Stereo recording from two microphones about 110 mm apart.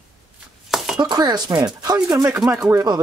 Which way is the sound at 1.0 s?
35° right (ahead or behind).